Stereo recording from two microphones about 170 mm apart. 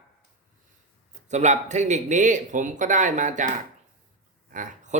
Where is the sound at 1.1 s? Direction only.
45° right (ahead or behind).